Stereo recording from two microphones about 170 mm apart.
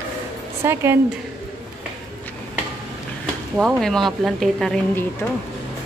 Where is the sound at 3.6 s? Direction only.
Centre (ahead or behind).